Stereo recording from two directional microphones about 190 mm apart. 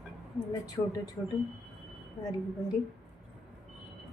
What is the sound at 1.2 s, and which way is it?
Speech, 15° left (ahead or behind).